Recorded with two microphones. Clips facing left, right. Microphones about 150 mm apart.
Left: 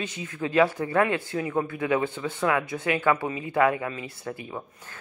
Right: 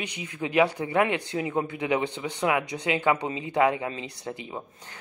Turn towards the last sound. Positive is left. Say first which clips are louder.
# left 1 dB
turn(degrees=-20)  # may be behind; listen again after turning